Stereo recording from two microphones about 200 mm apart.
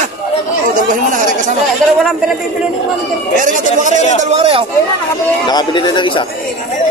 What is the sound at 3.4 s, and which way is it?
A man's voice, 40° right (ahead or behind).